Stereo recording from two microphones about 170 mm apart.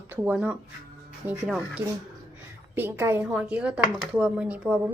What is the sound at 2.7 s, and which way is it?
A woman's voice, 15° right (ahead or behind).